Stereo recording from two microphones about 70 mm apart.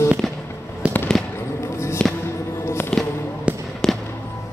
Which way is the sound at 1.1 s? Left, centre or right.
Centre.